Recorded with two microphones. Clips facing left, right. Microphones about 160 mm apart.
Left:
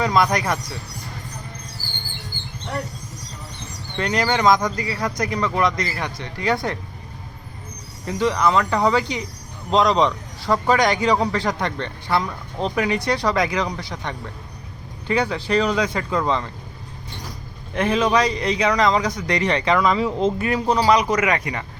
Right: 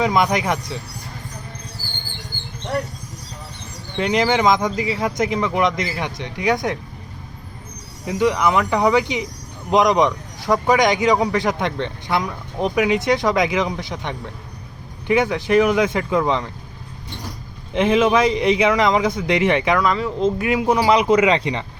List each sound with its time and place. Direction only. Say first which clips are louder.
0.0 s a man's voice: right 1 dB; 15° right (ahead or behind)
3.9 s a man's voice: right 3 dB; 15° right (ahead or behind)
8.0 s a man's voice: right 2 dB; 15° right (ahead or behind)
17.8 s a man's voice: right 3 dB; 10° right (ahead or behind)
18.3 s a man's voice: right 4 dB; 20° right (ahead or behind)
19.7 s speech: even; centre (ahead or behind)
20.4 s a man's voice: right 2 dB; 10° right (ahead or behind)
21.2 s a man's voice: right 4 dB; 25° right (ahead or behind)